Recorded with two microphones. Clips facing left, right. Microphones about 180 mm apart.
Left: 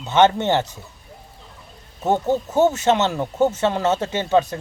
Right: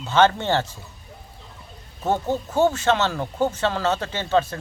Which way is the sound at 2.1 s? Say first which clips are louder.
Left 3 dB; 20° left (ahead or behind).